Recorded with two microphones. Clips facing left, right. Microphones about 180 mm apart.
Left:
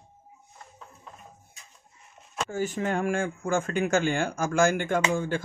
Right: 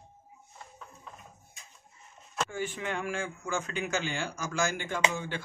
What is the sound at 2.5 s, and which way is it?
Speech, 40° left (ahead or behind).